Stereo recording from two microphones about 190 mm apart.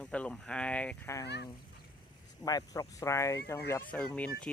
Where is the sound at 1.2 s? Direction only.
60° left (ahead or behind).